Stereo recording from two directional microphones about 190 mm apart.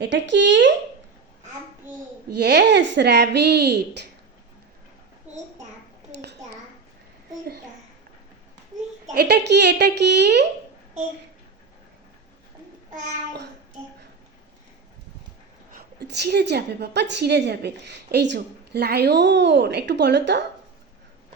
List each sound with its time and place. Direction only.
0.0 s speech: 70° right (ahead or behind)
2.4 s a woman's voice: 60° right (ahead or behind)
5.3 s a sound: 10° right (ahead or behind)
9.1 s a woman's voice: 60° right (ahead or behind)
15.7 s a woman's voice: 60° right (ahead or behind)